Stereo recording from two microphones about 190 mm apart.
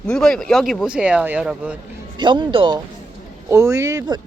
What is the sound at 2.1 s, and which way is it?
Speech, 25° right (ahead or behind).